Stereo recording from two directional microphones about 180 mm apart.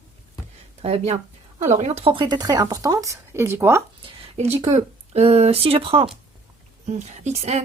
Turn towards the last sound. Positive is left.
turn(degrees=-35)  # may be behind; listen again after turning